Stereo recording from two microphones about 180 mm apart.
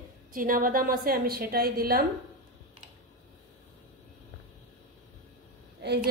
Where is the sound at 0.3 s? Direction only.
50° right (ahead or behind).